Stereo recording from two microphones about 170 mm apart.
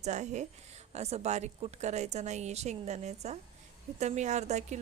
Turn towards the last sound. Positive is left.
turn(degrees=-40)  # may be behind; listen again after turning